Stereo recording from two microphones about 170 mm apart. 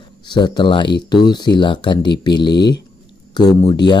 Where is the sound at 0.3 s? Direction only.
25° left (ahead or behind).